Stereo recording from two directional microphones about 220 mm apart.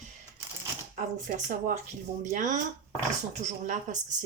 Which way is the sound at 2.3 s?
35° right (ahead or behind).